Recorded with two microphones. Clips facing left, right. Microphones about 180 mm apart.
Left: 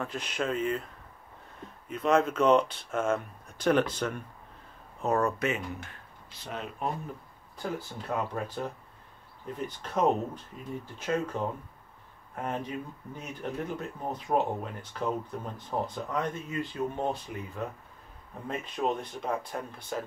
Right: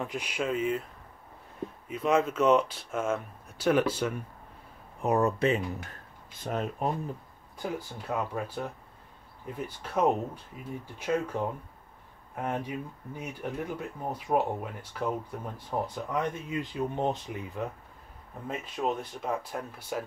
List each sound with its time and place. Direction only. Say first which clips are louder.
0.0 s speech: even; 10° right (ahead or behind)
1.9 s speech: left 1 dB; 5° right (ahead or behind)
5.4 s speech: right 4 dB; 35° right (ahead or behind)
6.3 s speech: right 6 dB; 45° right (ahead or behind)
7.5 s speech: even; 10° right (ahead or behind)
9.8 s speech: even; 10° right (ahead or behind)
18.5 s speech: left 1 dB; 5° right (ahead or behind)